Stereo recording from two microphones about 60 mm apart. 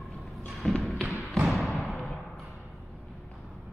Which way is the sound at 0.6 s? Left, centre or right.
Centre.